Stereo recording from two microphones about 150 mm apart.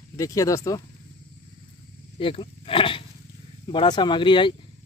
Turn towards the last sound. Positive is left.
turn(degrees=35)  # may be behind; listen again after turning